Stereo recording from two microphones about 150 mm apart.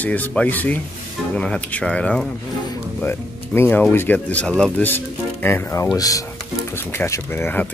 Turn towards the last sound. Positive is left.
turn(degrees=15)  # may be behind; listen again after turning